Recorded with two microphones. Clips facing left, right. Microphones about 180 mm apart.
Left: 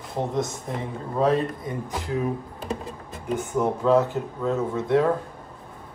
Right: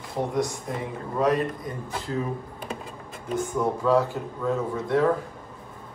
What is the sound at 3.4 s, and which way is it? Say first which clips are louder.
Speech: even; 20° left (ahead or behind).